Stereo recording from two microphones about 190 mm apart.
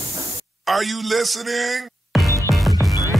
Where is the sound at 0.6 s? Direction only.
Centre (ahead or behind).